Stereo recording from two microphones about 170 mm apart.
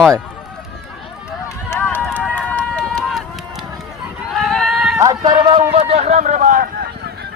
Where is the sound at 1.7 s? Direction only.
10° left (ahead or behind).